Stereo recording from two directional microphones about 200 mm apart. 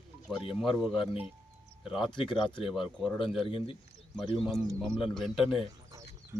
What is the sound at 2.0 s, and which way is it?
Speech, 25° left (ahead or behind).